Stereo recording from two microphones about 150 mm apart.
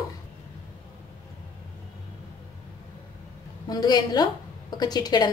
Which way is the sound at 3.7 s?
25° left (ahead or behind).